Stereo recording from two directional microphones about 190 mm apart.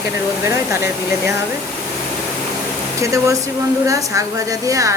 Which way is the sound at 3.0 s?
15° right (ahead or behind).